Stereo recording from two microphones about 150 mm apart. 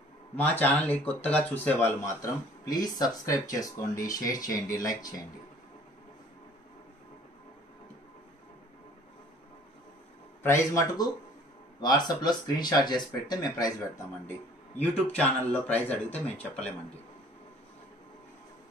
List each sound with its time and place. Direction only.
0.4 s a man's voice: 10° left (ahead or behind)
10.4 s speech: 20° left (ahead or behind)
15.1 s a man's voice: 10° left (ahead or behind)